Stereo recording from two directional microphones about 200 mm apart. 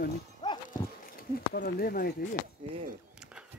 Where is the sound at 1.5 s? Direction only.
50° left (ahead or behind).